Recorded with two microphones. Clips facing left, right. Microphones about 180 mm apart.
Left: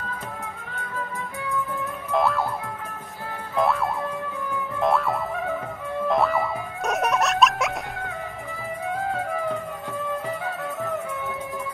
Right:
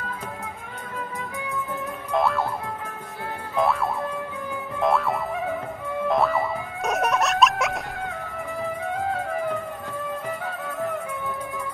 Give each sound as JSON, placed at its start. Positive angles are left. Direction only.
{"t": 2.1, "sound": "music", "side_deg": 0}
{"t": 3.5, "sound": "music", "side_deg": 0}